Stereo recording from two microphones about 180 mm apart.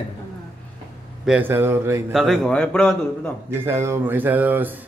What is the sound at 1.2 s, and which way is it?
Speech, 10° right (ahead or behind).